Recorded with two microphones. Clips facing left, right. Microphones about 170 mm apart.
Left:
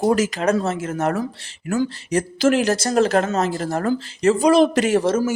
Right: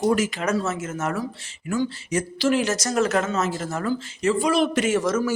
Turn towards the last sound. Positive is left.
turn(degrees=30)  # may be behind; listen again after turning